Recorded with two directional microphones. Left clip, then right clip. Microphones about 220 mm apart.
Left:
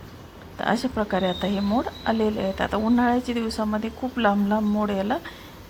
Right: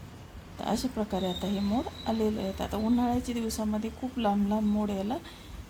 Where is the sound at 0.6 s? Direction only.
10° left (ahead or behind).